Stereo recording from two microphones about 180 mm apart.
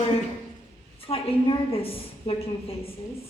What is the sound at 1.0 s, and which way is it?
A woman's voice, 30° left (ahead or behind).